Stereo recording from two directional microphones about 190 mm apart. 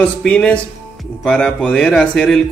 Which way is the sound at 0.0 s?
5° left (ahead or behind).